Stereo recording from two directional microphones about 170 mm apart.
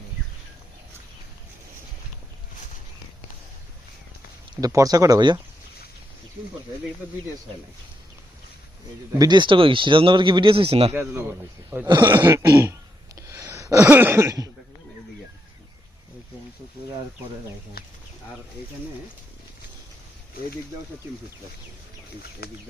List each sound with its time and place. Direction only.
4.6 s speech: 20° right (ahead or behind)
9.1 s speech: 25° right (ahead or behind)
10.9 s throat clearing: 15° right (ahead or behind)
11.9 s speech: 25° right (ahead or behind)
12.1 s throat clearing: 15° right (ahead or behind)
13.2 s speech: 15° right (ahead or behind)
22.4 s speech: 65° left (ahead or behind)